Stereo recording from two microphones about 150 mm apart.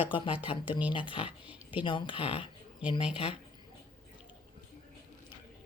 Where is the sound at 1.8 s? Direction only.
35° left (ahead or behind).